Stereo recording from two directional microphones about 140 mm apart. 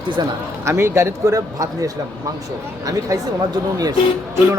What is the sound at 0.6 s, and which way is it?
Speech, 20° right (ahead or behind).